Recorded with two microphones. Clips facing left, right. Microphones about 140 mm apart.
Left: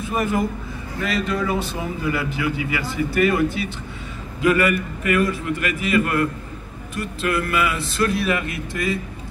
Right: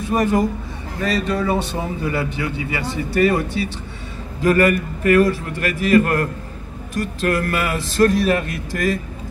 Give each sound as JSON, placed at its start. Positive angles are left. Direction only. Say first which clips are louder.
{"t": 0.1, "sound": "speech", "louder": "right 4 dB", "side_deg": -40}